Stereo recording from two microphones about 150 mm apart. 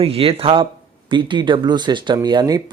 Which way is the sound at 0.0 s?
40° right (ahead or behind).